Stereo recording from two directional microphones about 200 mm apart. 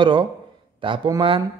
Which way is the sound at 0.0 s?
25° right (ahead or behind).